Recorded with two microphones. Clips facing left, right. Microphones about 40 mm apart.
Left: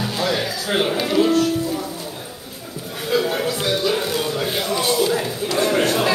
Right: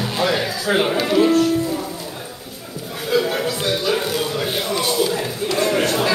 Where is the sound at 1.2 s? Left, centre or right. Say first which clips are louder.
Right 1 dB; right.